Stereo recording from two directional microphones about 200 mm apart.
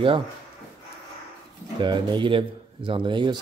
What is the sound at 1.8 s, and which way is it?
Speech, 25° right (ahead or behind).